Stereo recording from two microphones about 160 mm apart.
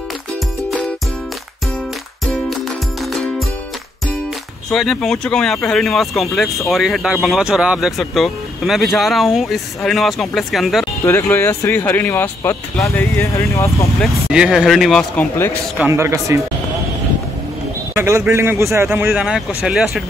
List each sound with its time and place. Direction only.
3.0 s music: centre (ahead or behind)
4.6 s speech: centre (ahead or behind)
11.1 s speech: 15° left (ahead or behind)
14.0 s speech: 5° right (ahead or behind)
15.1 s speech: 15° left (ahead or behind)
15.8 s speech: 15° right (ahead or behind)
17.9 s speech: 15° right (ahead or behind)